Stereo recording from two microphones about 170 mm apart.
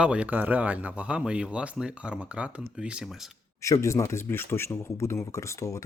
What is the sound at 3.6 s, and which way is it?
Speech, 15° left (ahead or behind).